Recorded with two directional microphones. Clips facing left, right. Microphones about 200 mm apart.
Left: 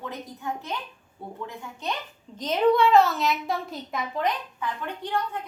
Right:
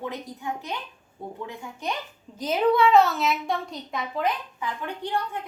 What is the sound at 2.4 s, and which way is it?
A woman's voice, 5° right (ahead or behind).